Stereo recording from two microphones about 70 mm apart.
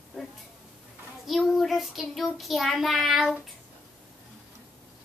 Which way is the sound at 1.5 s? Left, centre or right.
Centre.